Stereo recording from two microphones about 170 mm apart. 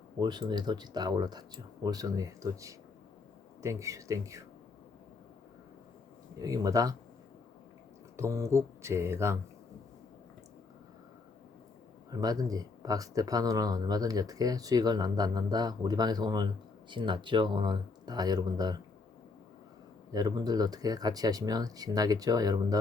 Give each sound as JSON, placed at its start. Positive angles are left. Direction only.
{"t": 0.2, "sound": "speech", "side_deg": -25}
{"t": 6.4, "sound": "speech", "side_deg": -20}
{"t": 8.1, "sound": "speech", "side_deg": -15}
{"t": 12.1, "sound": "speech", "side_deg": -20}
{"t": 20.1, "sound": "speech", "side_deg": -20}